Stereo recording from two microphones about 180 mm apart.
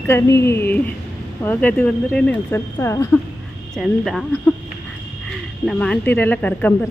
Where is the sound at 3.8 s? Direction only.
Centre (ahead or behind).